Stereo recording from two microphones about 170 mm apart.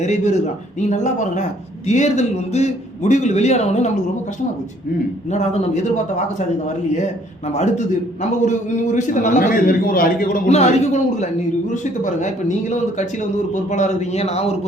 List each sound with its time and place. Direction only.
0.0 s a man's voice: 40° left (ahead or behind)
5.3 s a man's voice: 40° left (ahead or behind)
7.4 s a man's voice: 40° left (ahead or behind); by 10.5 s 60° left (ahead or behind)
10.5 s a man's voice: 40° left (ahead or behind)